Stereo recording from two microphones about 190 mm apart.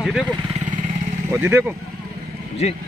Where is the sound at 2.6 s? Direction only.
35° left (ahead or behind).